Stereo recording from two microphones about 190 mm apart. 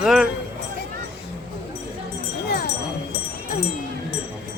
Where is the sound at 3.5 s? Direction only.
45° left (ahead or behind).